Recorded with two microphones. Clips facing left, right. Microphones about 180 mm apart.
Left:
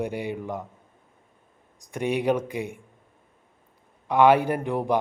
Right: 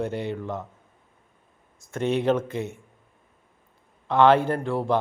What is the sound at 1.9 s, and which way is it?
Speech, 10° left (ahead or behind).